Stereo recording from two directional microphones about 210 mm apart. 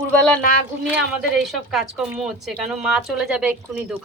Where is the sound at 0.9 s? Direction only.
5° right (ahead or behind).